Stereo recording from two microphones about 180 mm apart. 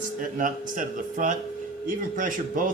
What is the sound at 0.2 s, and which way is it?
Speech, 45° right (ahead or behind).